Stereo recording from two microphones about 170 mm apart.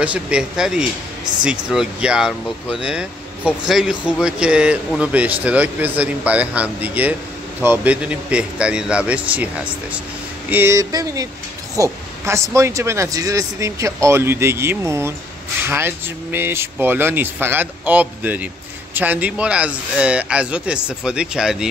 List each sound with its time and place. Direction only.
0.0 s speech: 5° right (ahead or behind)
10.5 s a sound: 15° right (ahead or behind)
11.7 s speech: 20° right (ahead or behind); by 21.6 s 5° right (ahead or behind)